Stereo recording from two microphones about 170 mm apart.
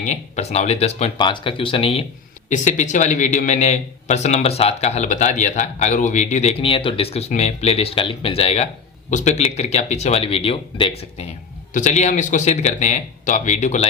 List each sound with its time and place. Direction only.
0.0 s a man's voice: 45° left (ahead or behind)
2.5 s a man's voice: 45° left (ahead or behind)
11.7 s speech: 45° left (ahead or behind)